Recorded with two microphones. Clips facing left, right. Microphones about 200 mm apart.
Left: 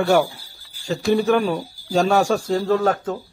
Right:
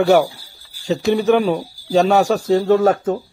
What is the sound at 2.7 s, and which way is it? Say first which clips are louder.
Speech: right 4 dB; 25° right (ahead or behind).